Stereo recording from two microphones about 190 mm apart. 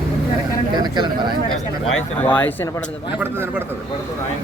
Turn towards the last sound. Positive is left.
turn(degrees=-10)  # may be behind; listen again after turning